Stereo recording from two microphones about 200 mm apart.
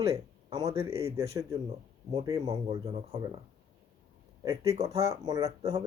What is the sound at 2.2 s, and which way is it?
Speech, 20° right (ahead or behind).